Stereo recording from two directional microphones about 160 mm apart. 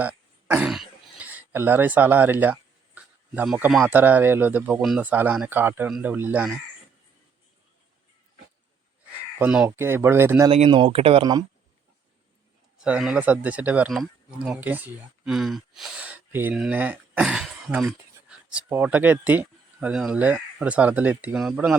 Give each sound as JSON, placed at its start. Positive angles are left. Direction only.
{"t": 0.0, "sound": "throat clearing", "side_deg": -10}
{"t": 3.7, "sound": "speech", "side_deg": -5}
{"t": 9.4, "sound": "speech", "side_deg": -5}
{"t": 10.5, "sound": "speech", "side_deg": -35}
{"t": 12.8, "sound": "speech", "side_deg": -5}